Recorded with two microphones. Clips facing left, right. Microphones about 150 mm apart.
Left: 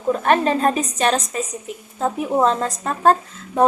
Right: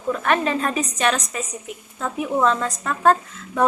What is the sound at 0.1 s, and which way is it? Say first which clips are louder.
A woman's voice: left 4 dB; 35° left (ahead or behind).